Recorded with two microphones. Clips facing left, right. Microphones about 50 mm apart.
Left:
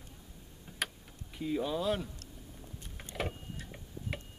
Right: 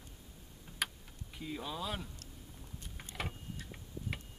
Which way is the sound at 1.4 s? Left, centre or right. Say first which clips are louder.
Left 8 dB; centre.